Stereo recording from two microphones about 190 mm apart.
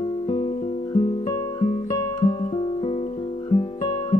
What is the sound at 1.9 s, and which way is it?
Guitar, 20° left (ahead or behind).